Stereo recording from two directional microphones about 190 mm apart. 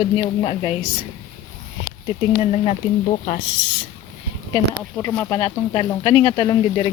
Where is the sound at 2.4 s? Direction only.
35° left (ahead or behind).